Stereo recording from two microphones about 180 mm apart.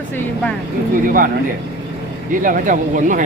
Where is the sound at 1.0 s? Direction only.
50° right (ahead or behind).